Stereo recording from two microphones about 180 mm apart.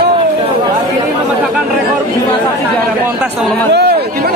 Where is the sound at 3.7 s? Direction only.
65° right (ahead or behind).